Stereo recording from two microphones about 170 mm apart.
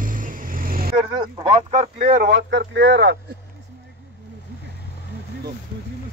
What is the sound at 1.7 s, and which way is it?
Speech, 40° right (ahead or behind).